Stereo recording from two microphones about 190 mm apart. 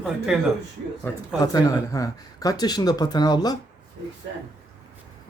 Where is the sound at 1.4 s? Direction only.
20° left (ahead or behind).